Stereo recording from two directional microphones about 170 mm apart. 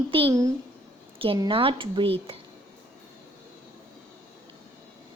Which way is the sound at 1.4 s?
30° right (ahead or behind).